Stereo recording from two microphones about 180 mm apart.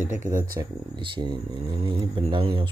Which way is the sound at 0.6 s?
25° right (ahead or behind).